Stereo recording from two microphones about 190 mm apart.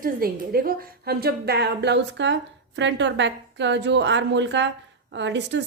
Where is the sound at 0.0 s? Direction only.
50° right (ahead or behind).